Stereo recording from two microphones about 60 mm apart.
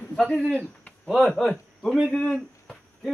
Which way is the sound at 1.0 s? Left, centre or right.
Centre.